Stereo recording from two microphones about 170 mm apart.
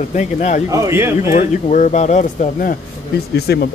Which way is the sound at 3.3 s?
70° left (ahead or behind).